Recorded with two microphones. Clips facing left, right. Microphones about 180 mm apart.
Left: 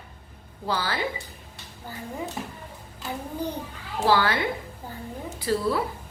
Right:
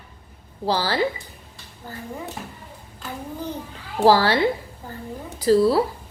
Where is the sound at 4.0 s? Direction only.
35° right (ahead or behind).